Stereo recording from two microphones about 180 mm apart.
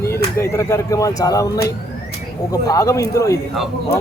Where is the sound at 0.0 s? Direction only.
15° left (ahead or behind).